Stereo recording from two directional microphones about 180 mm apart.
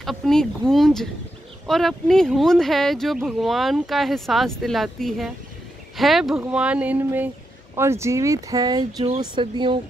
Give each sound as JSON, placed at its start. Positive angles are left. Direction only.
{"t": 0.0, "sound": "speech", "side_deg": 0}